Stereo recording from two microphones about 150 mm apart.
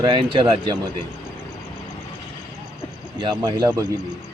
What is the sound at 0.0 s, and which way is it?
Speech, 30° right (ahead or behind).